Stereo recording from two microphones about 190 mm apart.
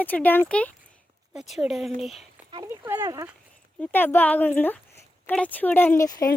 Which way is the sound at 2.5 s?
15° right (ahead or behind).